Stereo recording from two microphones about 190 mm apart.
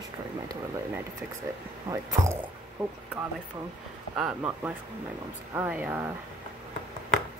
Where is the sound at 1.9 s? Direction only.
15° right (ahead or behind).